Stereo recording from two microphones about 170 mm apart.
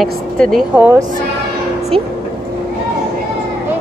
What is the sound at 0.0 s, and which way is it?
Speech, centre (ahead or behind).